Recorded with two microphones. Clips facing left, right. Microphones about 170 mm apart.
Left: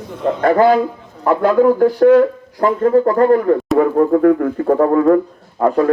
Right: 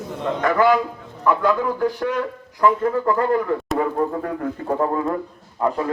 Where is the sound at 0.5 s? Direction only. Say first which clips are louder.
Left 5 dB; 45° left (ahead or behind).